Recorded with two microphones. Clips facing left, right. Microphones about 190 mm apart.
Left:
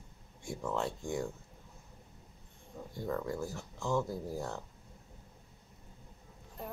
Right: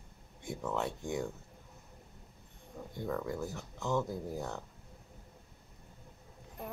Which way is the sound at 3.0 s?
Centre (ahead or behind).